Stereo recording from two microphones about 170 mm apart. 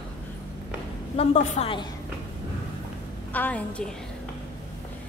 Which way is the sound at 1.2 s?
35° left (ahead or behind).